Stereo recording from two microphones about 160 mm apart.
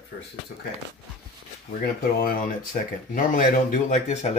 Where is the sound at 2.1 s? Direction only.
65° left (ahead or behind).